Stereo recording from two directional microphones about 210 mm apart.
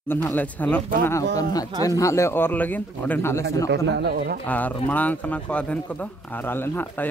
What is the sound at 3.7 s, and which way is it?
Speech, 50° right (ahead or behind).